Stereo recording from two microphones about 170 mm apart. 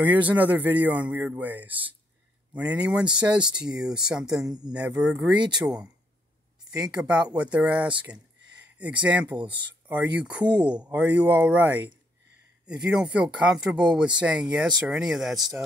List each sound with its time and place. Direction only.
0.0 s speech: 10° right (ahead or behind)
4.5 s speech: 25° right (ahead or behind)
4.7 s speech: 5° right (ahead or behind)
6.9 s speech: 5° right (ahead or behind)